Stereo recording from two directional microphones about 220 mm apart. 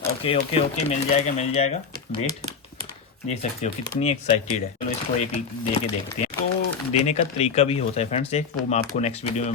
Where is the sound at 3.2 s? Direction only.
30° left (ahead or behind).